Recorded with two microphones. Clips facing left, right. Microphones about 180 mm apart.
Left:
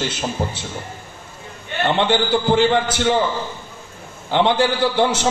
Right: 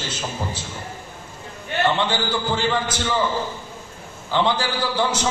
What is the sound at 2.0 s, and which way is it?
A man's voice, 55° left (ahead or behind).